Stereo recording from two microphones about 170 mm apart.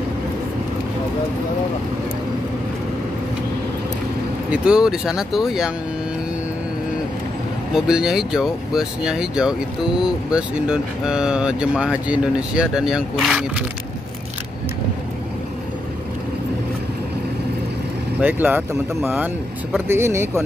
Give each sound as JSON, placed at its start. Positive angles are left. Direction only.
{"t": 4.5, "sound": "speech", "side_deg": -5}
{"t": 7.7, "sound": "speech", "side_deg": -5}
{"t": 18.2, "sound": "speech", "side_deg": -10}